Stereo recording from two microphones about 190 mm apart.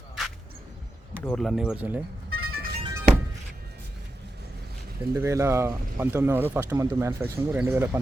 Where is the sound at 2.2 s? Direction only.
90° right.